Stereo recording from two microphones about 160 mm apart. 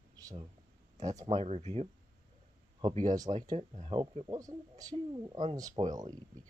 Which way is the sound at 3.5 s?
40° right (ahead or behind).